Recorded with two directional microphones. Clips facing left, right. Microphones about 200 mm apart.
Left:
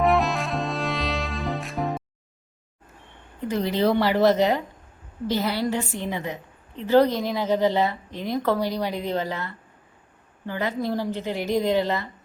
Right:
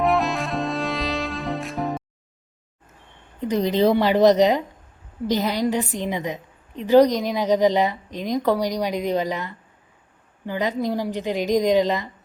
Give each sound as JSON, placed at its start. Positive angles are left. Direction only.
{"t": 0.0, "sound": "music", "side_deg": 0}
{"t": 3.4, "sound": "a woman's voice", "side_deg": -20}